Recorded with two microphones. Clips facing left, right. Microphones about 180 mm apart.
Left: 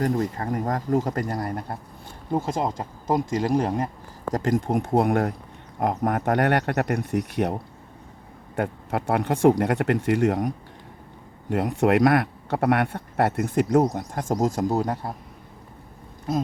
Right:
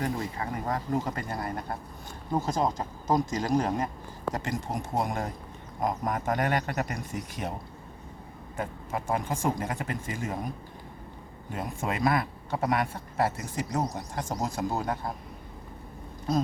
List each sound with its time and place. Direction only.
0.0 s speech: 45° left (ahead or behind)
4.3 s a man's voice: 45° left (ahead or behind); by 7.5 s 65° left (ahead or behind)
8.5 s a man's voice: 65° left (ahead or behind); by 15.1 s 35° left (ahead or behind)